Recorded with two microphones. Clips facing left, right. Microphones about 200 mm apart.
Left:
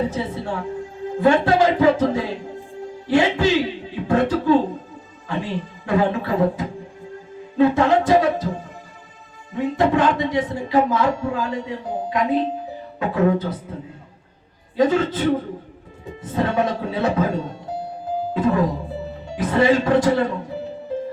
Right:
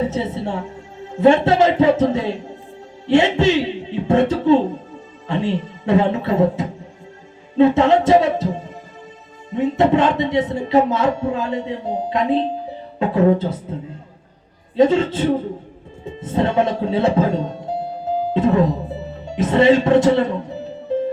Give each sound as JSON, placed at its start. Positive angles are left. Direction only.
{"t": 0.1, "sound": "a woman's voice", "side_deg": -25}
{"t": 9.5, "sound": "speech", "side_deg": -25}
{"t": 14.8, "sound": "speech", "side_deg": -25}